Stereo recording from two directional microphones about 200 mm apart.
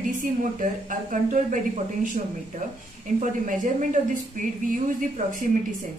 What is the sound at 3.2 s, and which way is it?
A woman's voice, 40° right (ahead or behind).